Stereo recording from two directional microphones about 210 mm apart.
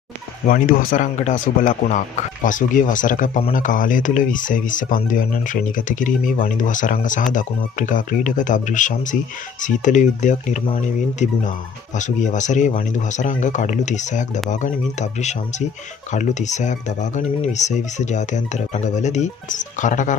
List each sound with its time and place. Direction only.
0.5 s speech: 40° left (ahead or behind)